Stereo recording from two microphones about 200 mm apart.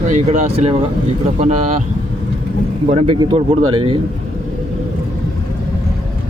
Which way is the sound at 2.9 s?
30° right (ahead or behind).